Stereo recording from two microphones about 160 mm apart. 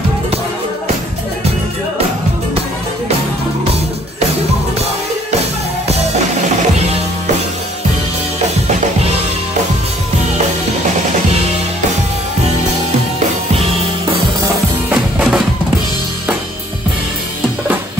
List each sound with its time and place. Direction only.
14.9 s music: 10° right (ahead or behind)